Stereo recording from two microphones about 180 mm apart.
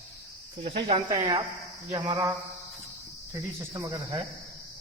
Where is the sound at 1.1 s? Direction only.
20° right (ahead or behind).